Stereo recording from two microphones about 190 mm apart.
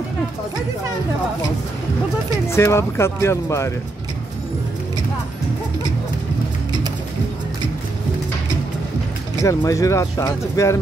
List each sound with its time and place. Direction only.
2.4 s speech: 15° left (ahead or behind)
9.4 s speech: 15° left (ahead or behind)